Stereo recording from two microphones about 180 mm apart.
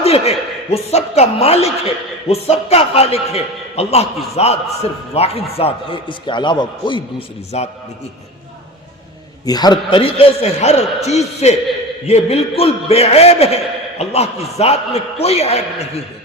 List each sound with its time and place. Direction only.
0.0 s a man's voice: 35° left (ahead or behind)
9.5 s a man's voice: 20° left (ahead or behind)